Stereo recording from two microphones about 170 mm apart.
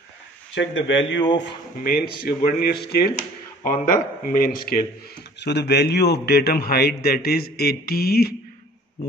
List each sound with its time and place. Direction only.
0.6 s speech: 90° left
1.8 s a man's voice: 60° left (ahead or behind)
3.6 s speech: 55° left (ahead or behind)
5.4 s a man's voice: 85° left; by 8.4 s 65° left (ahead or behind)